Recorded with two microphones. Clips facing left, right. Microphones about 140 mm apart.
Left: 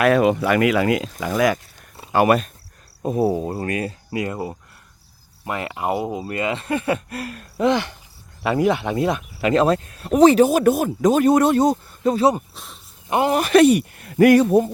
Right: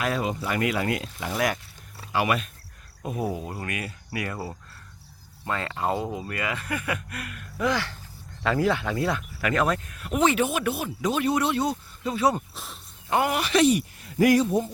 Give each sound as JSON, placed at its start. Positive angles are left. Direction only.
{"t": 0.0, "sound": "speech", "side_deg": 70}
{"t": 2.1, "sound": "speech", "side_deg": 45}
{"t": 12.5, "sound": "speech", "side_deg": 0}
{"t": 13.1, "sound": "speech", "side_deg": 20}
{"t": 13.3, "sound": "speech", "side_deg": 50}